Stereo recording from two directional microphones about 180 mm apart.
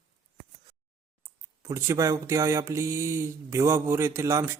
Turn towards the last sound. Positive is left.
turn(degrees=-15)  # may be behind; listen again after turning